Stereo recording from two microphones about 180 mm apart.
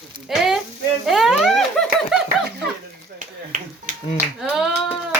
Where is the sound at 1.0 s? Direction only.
Centre (ahead or behind).